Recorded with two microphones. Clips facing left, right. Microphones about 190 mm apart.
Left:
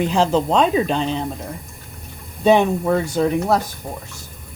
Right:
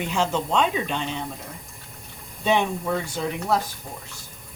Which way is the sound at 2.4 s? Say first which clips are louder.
Left 8 dB; 40° left (ahead or behind).